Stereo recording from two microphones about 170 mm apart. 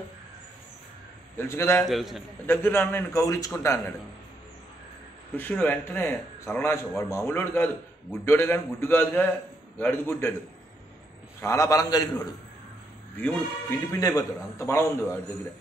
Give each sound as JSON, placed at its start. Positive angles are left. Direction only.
{"t": 1.3, "sound": "a man's voice", "side_deg": 15}
{"t": 1.9, "sound": "a man's voice", "side_deg": 0}
{"t": 2.4, "sound": "a man's voice", "side_deg": 10}
{"t": 5.3, "sound": "a man's voice", "side_deg": 10}
{"t": 11.4, "sound": "a man's voice", "side_deg": 20}
{"t": 13.2, "sound": "a man's voice", "side_deg": 10}
{"t": 13.9, "sound": "a man's voice", "side_deg": 20}